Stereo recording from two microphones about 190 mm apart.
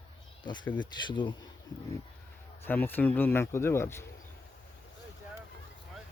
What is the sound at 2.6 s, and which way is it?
A man's voice, 10° left (ahead or behind).